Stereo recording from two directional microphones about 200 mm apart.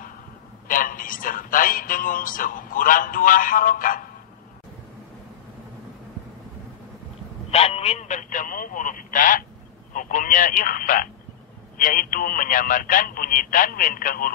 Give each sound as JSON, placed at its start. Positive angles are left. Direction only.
{"t": 0.7, "sound": "music", "side_deg": 45}
{"t": 7.5, "sound": "speech", "side_deg": 30}